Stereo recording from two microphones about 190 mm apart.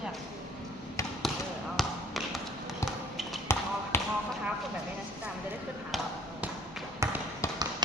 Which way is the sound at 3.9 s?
10° left (ahead or behind).